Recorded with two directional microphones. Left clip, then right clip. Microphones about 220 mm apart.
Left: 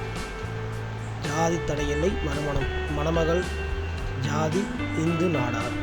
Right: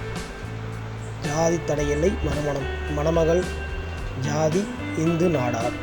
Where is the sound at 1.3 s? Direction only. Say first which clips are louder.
Right 3 dB; 5° right (ahead or behind).